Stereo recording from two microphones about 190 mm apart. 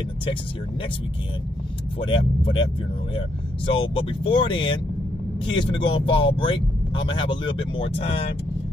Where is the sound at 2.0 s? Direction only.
25° left (ahead or behind).